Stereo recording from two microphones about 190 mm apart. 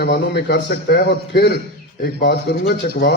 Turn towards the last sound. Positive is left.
turn(degrees=60)  # may be behind; listen again after turning